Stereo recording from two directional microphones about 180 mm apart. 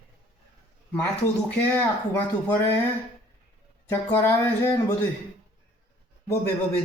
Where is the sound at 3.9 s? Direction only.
15° left (ahead or behind).